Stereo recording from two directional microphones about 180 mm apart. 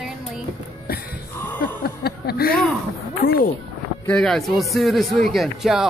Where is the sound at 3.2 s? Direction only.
50° left (ahead or behind).